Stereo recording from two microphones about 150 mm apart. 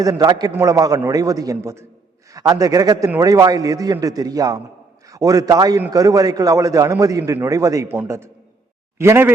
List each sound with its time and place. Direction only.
0.0 s a man's voice: 25° right (ahead or behind)